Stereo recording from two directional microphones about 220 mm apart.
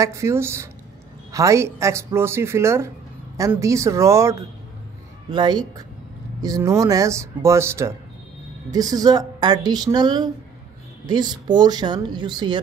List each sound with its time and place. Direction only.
0.0 s a woman's voice: 15° right (ahead or behind)